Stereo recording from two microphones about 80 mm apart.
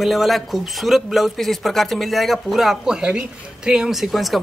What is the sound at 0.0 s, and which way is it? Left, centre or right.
Speech, centre.